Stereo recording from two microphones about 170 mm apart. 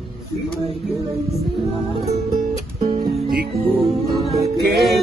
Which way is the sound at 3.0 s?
60° right (ahead or behind).